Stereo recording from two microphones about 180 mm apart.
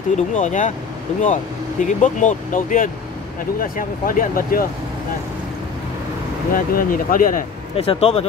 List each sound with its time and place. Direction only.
0.3 s speech: 45° left (ahead or behind)
6.5 s speech: 50° left (ahead or behind)
7.7 s speech: 30° left (ahead or behind)